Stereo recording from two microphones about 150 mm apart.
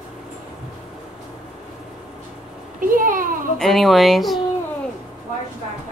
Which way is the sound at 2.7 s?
65° right (ahead or behind).